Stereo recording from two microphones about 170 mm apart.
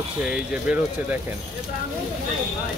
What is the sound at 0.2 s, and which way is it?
Speech, 5° right (ahead or behind).